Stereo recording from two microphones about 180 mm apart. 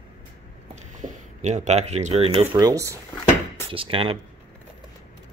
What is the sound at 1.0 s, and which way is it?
Speech, 40° right (ahead or behind).